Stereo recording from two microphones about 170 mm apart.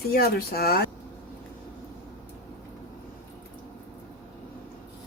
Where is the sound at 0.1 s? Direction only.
65° left (ahead or behind).